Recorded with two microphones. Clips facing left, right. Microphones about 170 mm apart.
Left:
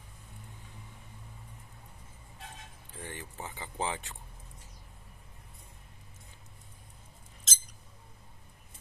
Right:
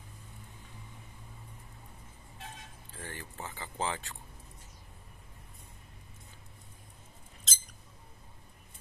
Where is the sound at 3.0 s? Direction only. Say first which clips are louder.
Left 1 dB; 20° left (ahead or behind).